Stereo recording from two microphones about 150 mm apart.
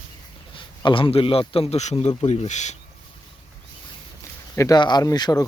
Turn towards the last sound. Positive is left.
turn(degrees=25)  # may be behind; listen again after turning